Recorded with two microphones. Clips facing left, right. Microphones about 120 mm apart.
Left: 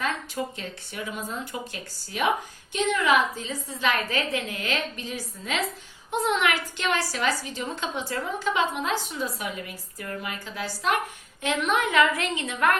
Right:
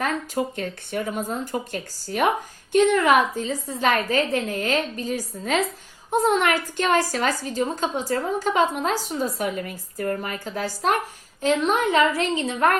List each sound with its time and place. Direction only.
0.0 s a woman's voice: 50° right (ahead or behind); by 12.7 s 30° right (ahead or behind)